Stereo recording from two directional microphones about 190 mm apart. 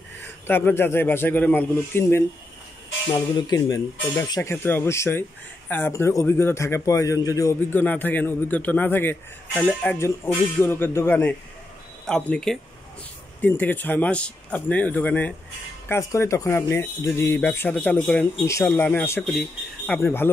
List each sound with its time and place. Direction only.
0.2 s a man's voice: 10° left (ahead or behind)